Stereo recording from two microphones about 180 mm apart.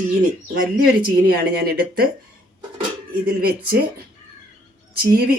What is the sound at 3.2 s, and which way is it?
Speech, 55° right (ahead or behind).